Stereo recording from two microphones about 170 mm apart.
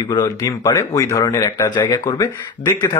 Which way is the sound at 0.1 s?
20° left (ahead or behind).